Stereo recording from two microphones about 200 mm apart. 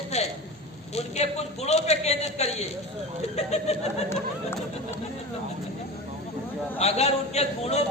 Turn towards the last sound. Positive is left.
turn(degrees=30)  # may be behind; listen again after turning